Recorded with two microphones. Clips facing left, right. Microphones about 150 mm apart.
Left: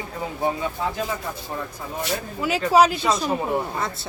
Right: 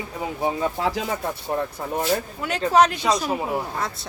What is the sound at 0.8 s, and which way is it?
Speech, 85° right.